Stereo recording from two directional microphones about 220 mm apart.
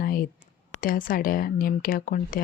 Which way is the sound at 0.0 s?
40° left (ahead or behind).